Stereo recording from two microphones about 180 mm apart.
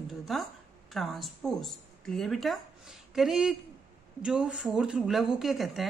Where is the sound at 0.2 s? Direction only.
Centre (ahead or behind).